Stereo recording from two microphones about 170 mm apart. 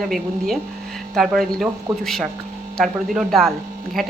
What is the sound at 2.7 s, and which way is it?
Speech, centre (ahead or behind).